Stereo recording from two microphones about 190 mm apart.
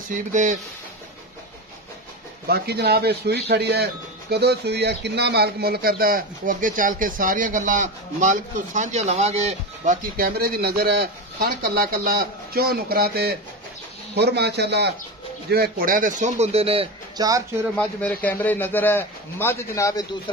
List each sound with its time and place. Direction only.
0.1 s speech: 40° right (ahead or behind)
2.4 s speech: 55° right (ahead or behind); by 9.9 s 35° right (ahead or behind)
10.1 s a man's voice: 55° right (ahead or behind)
15.5 s speech: 50° right (ahead or behind); by 17.3 s 30° right (ahead or behind)
17.7 s a man's voice: 10° left (ahead or behind)